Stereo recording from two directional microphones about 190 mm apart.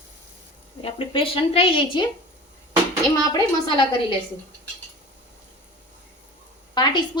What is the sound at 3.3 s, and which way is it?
Speech, 25° left (ahead or behind).